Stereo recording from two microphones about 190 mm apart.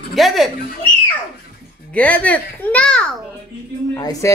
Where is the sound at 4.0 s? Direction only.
20° left (ahead or behind).